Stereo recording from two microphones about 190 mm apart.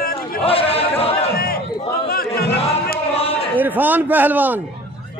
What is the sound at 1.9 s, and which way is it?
Chatter, 50° left (ahead or behind).